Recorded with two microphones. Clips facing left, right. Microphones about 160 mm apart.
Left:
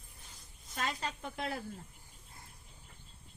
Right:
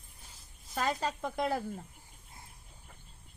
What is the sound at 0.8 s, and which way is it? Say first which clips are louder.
Speech: right 6 dB; 40° right (ahead or behind).